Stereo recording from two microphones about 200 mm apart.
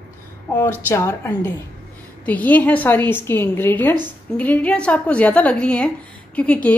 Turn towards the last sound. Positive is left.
turn(degrees=5)  # may be behind; listen again after turning